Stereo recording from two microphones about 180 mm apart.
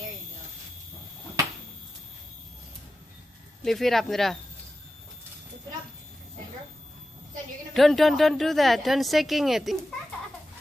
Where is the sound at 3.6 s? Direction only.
Centre (ahead or behind).